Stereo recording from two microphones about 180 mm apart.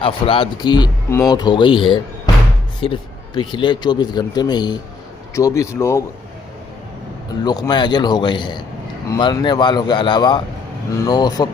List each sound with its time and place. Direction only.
0.0 s speech: 30° left (ahead or behind)
7.4 s speech: 25° left (ahead or behind)